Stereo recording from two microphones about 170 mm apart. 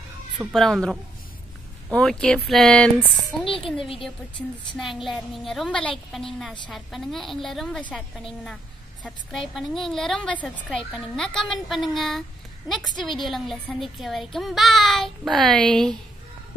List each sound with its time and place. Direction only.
0.4 s a child's voice: centre (ahead or behind)
3.4 s a woman's voice: 30° left (ahead or behind)
4.0 s a child's voice: centre (ahead or behind)
9.0 s a child's voice: centre (ahead or behind)